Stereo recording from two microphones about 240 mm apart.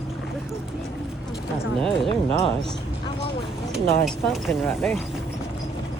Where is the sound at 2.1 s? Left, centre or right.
Left.